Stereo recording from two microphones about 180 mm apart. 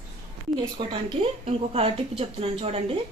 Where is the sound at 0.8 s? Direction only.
30° right (ahead or behind).